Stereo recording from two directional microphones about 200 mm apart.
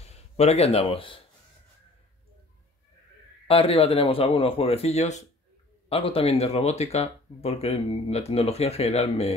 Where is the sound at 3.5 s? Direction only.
30° left (ahead or behind).